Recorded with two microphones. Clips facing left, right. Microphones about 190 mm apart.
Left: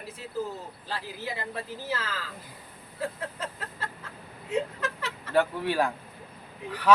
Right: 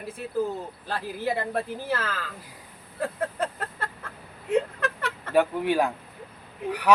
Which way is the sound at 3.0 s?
55° right (ahead or behind).